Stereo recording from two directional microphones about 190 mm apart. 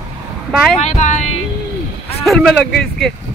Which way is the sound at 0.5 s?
Centre (ahead or behind).